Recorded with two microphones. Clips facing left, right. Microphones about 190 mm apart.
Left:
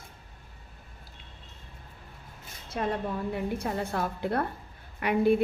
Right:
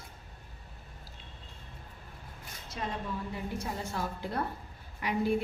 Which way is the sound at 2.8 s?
55° left (ahead or behind).